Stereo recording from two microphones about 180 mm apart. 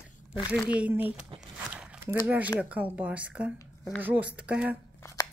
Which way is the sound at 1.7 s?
5° right (ahead or behind).